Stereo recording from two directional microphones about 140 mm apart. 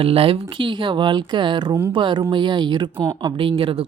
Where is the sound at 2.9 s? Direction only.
20° right (ahead or behind); by 3.8 s 40° right (ahead or behind).